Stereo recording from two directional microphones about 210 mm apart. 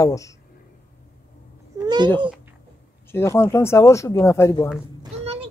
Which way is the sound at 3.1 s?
10° left (ahead or behind).